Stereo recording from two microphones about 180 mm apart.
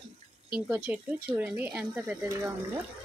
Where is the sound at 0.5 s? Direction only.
10° right (ahead or behind).